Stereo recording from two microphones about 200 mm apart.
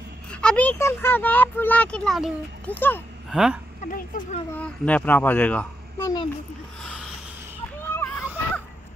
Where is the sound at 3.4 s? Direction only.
5° right (ahead or behind).